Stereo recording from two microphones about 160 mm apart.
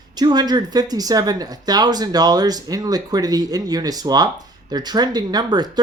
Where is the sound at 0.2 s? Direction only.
25° right (ahead or behind).